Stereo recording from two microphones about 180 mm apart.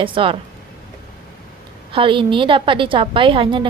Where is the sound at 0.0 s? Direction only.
30° right (ahead or behind).